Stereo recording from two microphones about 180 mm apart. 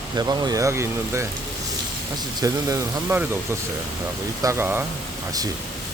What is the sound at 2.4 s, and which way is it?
Speech, 20° right (ahead or behind).